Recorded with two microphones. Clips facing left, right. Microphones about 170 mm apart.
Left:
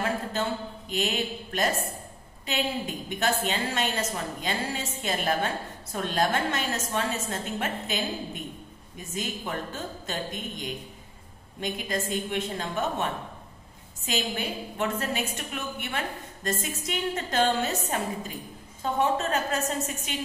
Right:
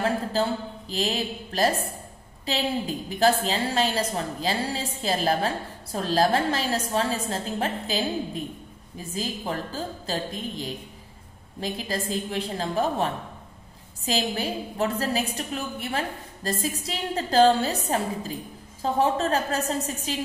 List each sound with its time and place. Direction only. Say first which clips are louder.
0.0 s a woman's voice: right 4 dB; 35° right (ahead or behind)